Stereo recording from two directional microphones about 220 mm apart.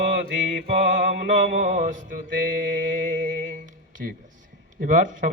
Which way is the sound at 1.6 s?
35° right (ahead or behind).